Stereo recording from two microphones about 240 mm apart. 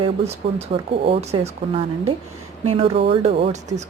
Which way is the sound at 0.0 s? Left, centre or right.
Right.